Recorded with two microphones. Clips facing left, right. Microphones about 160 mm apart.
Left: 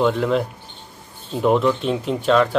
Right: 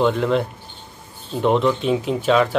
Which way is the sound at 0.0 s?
Centre (ahead or behind).